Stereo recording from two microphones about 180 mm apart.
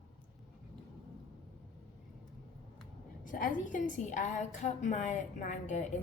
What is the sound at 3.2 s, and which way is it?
A woman's voice, 50° left (ahead or behind).